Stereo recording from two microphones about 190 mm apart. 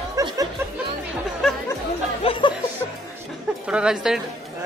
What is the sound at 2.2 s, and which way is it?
Music, 30° left (ahead or behind).